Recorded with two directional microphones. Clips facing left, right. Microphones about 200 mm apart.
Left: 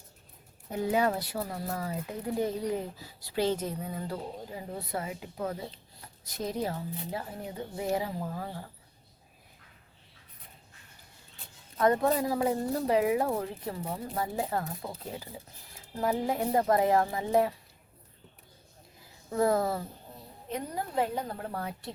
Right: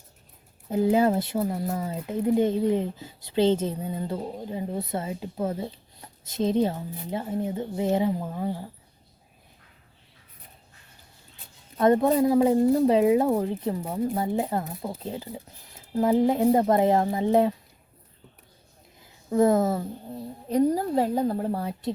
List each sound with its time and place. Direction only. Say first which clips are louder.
0.7 s speech: right 7 dB; 30° right (ahead or behind)
12.1 s speech: right 8 dB; 20° right (ahead or behind)
19.3 s speech: right 6 dB; 20° right (ahead or behind)
20.5 s speech: right 13 dB; 35° right (ahead or behind)